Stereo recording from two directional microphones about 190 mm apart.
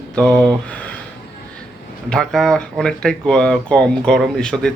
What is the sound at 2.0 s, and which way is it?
A man's voice, centre (ahead or behind).